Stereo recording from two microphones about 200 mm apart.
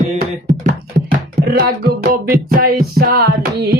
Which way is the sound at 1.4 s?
50° right (ahead or behind).